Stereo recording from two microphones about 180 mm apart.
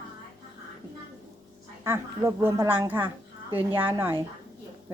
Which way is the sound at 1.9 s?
15° right (ahead or behind).